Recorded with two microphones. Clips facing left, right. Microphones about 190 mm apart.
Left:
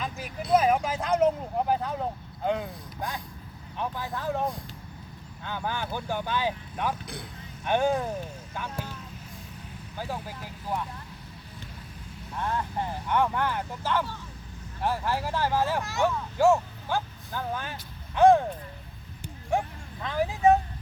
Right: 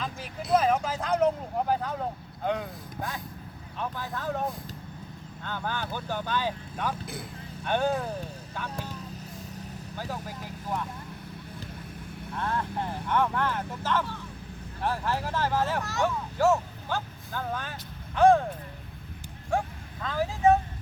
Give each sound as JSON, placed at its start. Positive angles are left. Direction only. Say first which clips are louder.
{"t": 0.0, "sound": "speech", "louder": "left 1 dB", "side_deg": 5}
{"t": 5.4, "sound": "speech", "louder": "left 1 dB", "side_deg": 10}
{"t": 7.0, "sound": "speech", "louder": "right 1 dB", "side_deg": 0}
{"t": 7.6, "sound": "speech", "louder": "left 2 dB", "side_deg": 10}
{"t": 10.0, "sound": "speech", "louder": "left 2 dB", "side_deg": 10}
{"t": 12.4, "sound": "speech", "louder": "left 1 dB", "side_deg": 10}
{"t": 19.5, "sound": "a sound", "louder": "left 1 dB", "side_deg": 20}